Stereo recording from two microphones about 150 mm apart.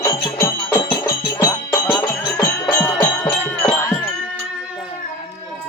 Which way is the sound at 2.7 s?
10° left (ahead or behind).